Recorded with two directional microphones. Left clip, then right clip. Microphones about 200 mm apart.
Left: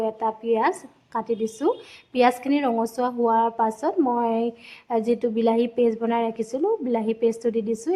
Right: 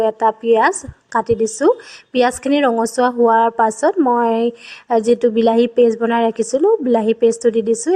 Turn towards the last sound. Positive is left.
turn(degrees=-25)  # may be behind; listen again after turning